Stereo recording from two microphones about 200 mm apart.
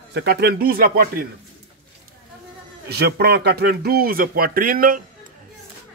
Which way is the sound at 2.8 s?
55° right (ahead or behind).